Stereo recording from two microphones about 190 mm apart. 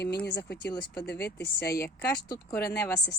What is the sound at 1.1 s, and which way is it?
Speech, 10° left (ahead or behind).